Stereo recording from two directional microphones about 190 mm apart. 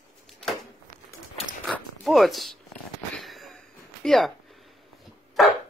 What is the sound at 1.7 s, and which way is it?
Zipper, centre (ahead or behind).